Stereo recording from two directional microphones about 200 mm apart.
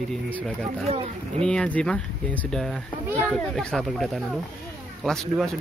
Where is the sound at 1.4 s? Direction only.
5° left (ahead or behind).